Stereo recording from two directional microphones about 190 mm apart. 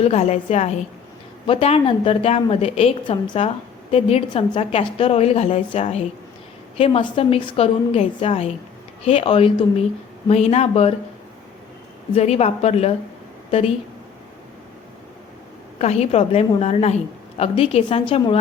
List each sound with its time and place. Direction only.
0.0 s a woman's voice: 35° left (ahead or behind)
12.1 s a woman's voice: 35° left (ahead or behind)
15.8 s a woman's voice: 35° left (ahead or behind)